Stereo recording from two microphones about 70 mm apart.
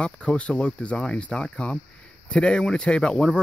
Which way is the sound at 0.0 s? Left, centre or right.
Centre.